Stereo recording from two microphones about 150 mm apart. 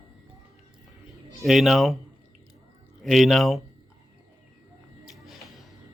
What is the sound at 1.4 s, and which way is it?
Speech, centre (ahead or behind).